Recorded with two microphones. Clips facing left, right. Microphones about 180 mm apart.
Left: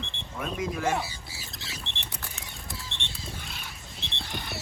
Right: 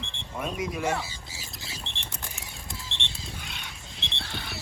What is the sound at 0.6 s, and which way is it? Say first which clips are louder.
Speech: left 1 dB; 20° right (ahead or behind).